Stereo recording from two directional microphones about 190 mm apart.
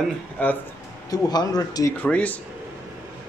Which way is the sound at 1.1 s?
20° left (ahead or behind).